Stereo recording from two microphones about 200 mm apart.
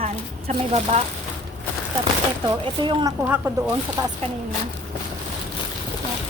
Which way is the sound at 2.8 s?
20° right (ahead or behind).